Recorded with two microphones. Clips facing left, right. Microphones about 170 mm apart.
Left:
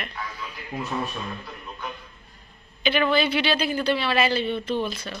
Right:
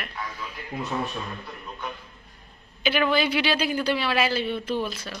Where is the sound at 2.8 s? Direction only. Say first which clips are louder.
Left 1 dB; 10° right (ahead or behind).